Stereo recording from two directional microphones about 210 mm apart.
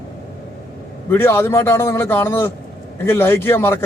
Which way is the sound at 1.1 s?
10° left (ahead or behind).